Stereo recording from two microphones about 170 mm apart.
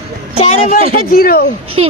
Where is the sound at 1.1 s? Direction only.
65° left (ahead or behind).